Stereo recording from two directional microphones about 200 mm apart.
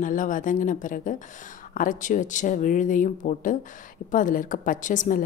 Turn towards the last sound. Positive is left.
turn(degrees=40)  # may be behind; listen again after turning